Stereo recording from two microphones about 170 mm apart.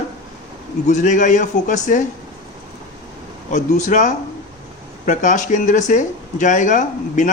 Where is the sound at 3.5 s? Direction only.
45° left (ahead or behind).